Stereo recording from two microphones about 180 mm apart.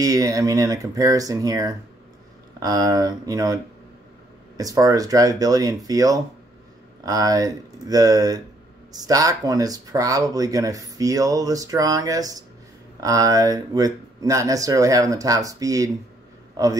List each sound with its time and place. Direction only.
0.0 s speech: 20° right (ahead or behind)
4.6 s speech: 20° right (ahead or behind)